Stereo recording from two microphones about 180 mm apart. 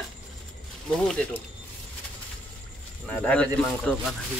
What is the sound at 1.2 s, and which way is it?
Speech, 5° left (ahead or behind).